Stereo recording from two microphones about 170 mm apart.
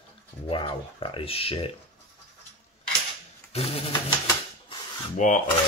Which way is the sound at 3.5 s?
35° left (ahead or behind).